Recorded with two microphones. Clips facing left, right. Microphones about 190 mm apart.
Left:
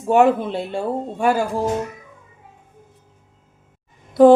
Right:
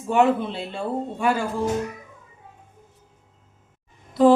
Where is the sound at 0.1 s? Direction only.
45° left (ahead or behind).